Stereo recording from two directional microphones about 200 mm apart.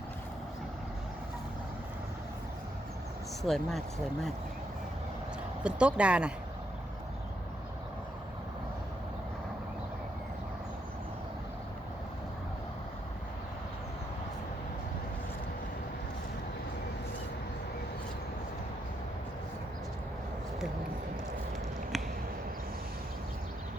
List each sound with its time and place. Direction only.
3.4 s speech: centre (ahead or behind)
5.6 s speech: 5° right (ahead or behind)
21.9 s a sound: centre (ahead or behind)